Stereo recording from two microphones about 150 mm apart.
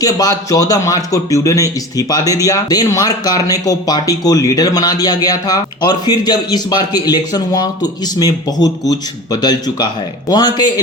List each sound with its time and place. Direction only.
0.0 s speech: 25° left (ahead or behind)